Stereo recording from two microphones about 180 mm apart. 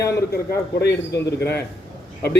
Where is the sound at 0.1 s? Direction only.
65° left (ahead or behind).